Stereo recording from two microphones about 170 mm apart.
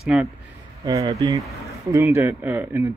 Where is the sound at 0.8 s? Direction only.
20° right (ahead or behind).